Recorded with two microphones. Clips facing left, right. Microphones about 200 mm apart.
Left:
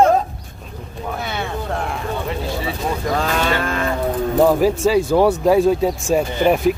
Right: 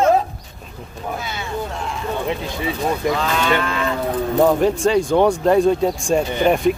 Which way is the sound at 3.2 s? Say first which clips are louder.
Even; 45° left (ahead or behind).